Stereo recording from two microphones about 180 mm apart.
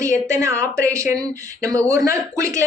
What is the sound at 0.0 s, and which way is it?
Speech, 15° right (ahead or behind).